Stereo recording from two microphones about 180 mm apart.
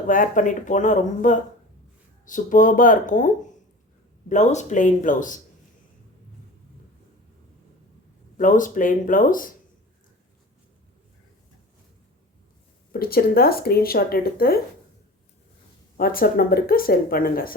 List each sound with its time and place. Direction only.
0.1 s speech: 50° left (ahead or behind)
8.4 s speech: 45° left (ahead or behind)
12.9 s speech: 55° left (ahead or behind)
16.0 s speech: 55° left (ahead or behind)